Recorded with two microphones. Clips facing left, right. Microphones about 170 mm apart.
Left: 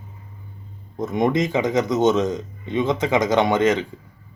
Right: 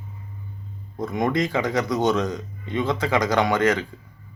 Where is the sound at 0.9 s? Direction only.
20° left (ahead or behind).